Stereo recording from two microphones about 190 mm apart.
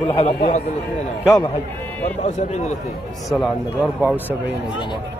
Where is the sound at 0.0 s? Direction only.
30° left (ahead or behind).